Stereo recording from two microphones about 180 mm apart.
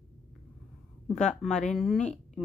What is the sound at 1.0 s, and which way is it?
A woman's voice, 5° left (ahead or behind).